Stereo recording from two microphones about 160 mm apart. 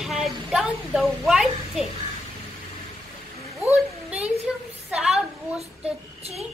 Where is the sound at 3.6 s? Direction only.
Centre (ahead or behind).